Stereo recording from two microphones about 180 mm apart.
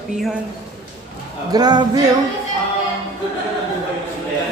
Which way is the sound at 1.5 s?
20° right (ahead or behind).